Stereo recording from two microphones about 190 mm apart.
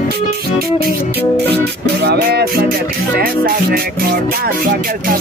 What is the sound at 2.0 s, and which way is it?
Music, 55° right (ahead or behind).